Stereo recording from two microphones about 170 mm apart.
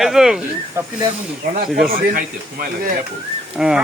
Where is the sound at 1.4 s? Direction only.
55° right (ahead or behind).